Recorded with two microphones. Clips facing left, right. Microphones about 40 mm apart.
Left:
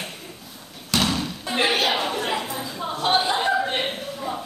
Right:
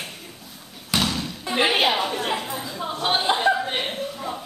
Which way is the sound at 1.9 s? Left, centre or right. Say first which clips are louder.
Even; centre.